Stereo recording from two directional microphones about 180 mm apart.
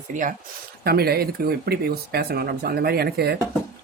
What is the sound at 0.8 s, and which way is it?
Speech, 60° right (ahead or behind).